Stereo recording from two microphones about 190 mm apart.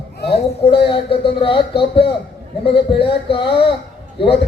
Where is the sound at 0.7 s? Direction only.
30° left (ahead or behind).